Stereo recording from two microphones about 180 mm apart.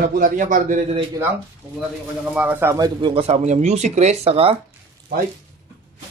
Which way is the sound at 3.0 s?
30° right (ahead or behind).